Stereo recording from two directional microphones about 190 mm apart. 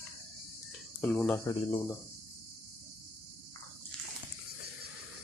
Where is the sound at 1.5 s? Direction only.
25° left (ahead or behind).